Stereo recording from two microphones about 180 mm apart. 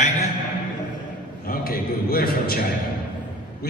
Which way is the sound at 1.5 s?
55° left (ahead or behind).